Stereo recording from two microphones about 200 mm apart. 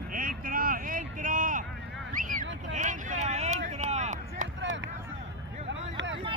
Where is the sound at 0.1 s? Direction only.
45° right (ahead or behind).